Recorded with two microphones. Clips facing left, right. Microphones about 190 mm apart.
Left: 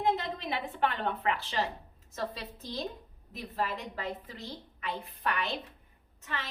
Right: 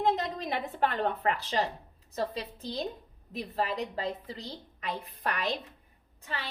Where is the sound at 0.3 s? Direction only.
40° right (ahead or behind).